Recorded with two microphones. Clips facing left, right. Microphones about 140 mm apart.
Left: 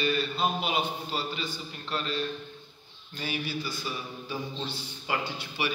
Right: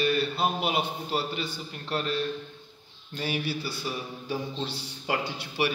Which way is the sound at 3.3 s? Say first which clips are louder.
Right 2 dB; 65° right (ahead or behind).